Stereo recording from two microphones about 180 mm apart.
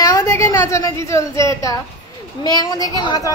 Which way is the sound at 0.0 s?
20° left (ahead or behind).